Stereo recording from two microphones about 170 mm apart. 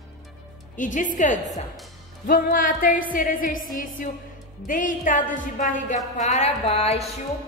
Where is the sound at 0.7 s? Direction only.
50° left (ahead or behind).